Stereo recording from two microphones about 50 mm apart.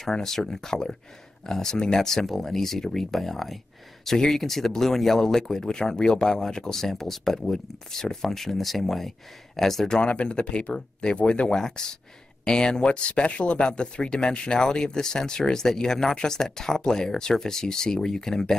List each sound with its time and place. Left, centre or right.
0.0 s speech: centre
10.1 s speech: left